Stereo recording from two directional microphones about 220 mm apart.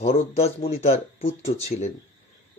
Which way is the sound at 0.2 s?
30° left (ahead or behind).